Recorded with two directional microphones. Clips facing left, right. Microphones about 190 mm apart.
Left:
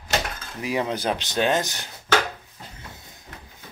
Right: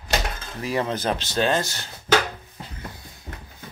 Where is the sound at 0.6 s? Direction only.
10° left (ahead or behind).